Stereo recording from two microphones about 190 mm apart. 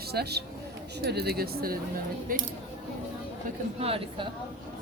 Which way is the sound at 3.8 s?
30° right (ahead or behind).